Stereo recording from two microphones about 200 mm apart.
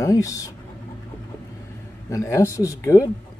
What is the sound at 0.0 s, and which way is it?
Speech, 15° left (ahead or behind).